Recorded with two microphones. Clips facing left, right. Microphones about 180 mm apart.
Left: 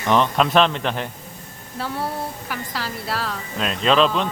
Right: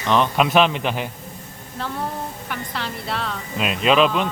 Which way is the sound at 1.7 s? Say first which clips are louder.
Left 1 dB; 5° left (ahead or behind).